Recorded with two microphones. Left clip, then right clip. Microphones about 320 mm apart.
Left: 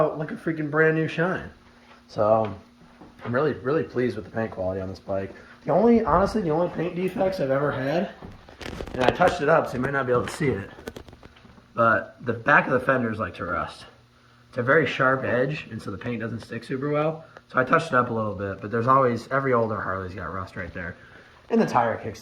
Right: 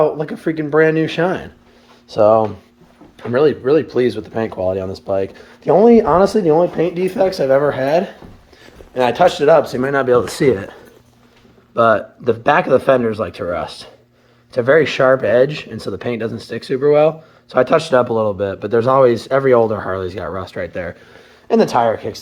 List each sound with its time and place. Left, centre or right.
0.0 s speech: right
3.2 s speech: right
11.7 s speech: centre